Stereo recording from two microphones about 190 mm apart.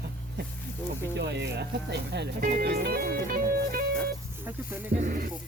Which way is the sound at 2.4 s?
55° right (ahead or behind).